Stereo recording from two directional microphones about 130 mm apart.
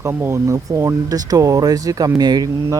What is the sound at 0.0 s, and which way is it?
Speech, 20° right (ahead or behind).